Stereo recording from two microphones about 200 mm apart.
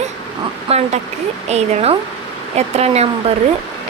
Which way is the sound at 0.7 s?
30° right (ahead or behind).